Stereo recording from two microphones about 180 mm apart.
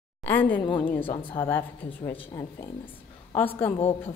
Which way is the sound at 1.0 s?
30° left (ahead or behind).